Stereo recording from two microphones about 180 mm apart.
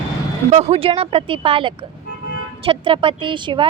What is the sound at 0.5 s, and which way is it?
Speech, 35° right (ahead or behind).